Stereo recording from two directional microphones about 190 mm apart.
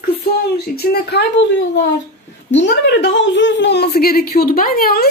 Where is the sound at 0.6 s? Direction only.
55° left (ahead or behind).